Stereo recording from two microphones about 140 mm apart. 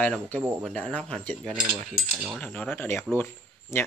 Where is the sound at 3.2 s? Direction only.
15° left (ahead or behind).